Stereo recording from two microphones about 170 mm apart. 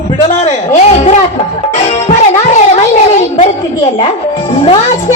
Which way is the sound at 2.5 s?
40° left (ahead or behind).